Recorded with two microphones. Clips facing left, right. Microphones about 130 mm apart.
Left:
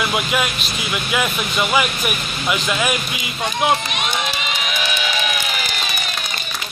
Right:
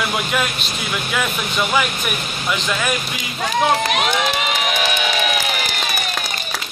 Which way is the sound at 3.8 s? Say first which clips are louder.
Right 5 dB; 75° right (ahead or behind).